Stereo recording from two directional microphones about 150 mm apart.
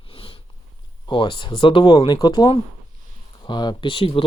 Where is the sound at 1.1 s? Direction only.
35° left (ahead or behind).